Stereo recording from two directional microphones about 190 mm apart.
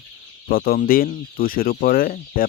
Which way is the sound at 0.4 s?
50° left (ahead or behind).